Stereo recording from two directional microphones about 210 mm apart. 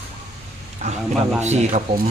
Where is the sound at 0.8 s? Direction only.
30° right (ahead or behind).